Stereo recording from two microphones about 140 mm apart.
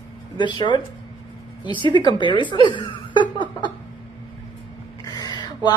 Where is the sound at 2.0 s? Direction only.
35° left (ahead or behind).